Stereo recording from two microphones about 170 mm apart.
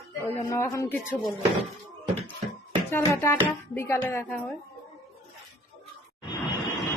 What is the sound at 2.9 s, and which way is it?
Speech, 15° left (ahead or behind).